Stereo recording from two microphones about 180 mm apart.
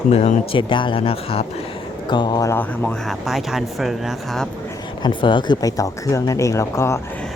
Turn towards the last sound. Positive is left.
turn(degrees=15)  # may be behind; listen again after turning